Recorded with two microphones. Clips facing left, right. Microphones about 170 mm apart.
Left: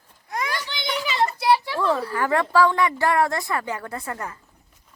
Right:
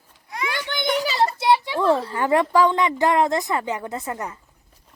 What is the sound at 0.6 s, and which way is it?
Children playing, 50° right (ahead or behind).